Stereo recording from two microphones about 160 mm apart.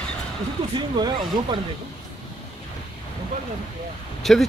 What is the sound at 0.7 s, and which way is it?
Speech, 30° right (ahead or behind).